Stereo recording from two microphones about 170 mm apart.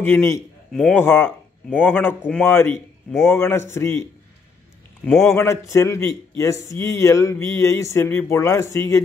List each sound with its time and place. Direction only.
0.0 s speech: 15° left (ahead or behind)
3.1 s a man's voice: centre (ahead or behind)
3.3 s speech: 15° left (ahead or behind)
5.0 s a man's voice: centre (ahead or behind)
5.3 s speech: 15° left (ahead or behind)